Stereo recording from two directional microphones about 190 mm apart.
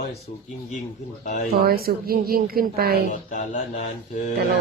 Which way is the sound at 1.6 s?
50° right (ahead or behind).